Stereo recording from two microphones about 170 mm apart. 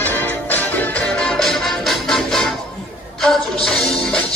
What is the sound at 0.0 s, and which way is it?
Music, 10° left (ahead or behind).